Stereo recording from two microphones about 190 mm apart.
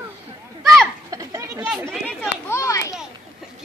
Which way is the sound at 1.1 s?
15° right (ahead or behind).